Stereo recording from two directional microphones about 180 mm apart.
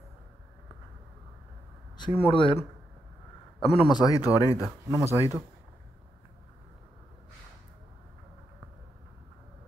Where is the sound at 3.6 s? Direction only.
30° left (ahead or behind).